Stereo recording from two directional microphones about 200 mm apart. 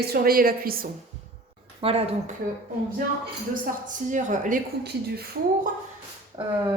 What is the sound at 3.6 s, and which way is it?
Speech, 40° right (ahead or behind).